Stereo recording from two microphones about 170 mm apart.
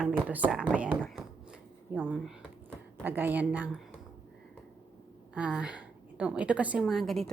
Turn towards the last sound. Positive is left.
turn(degrees=0)  # may be behind; listen again after turning